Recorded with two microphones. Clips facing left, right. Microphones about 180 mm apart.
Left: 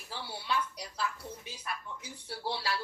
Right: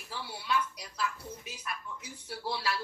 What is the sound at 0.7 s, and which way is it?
Speech, 30° left (ahead or behind).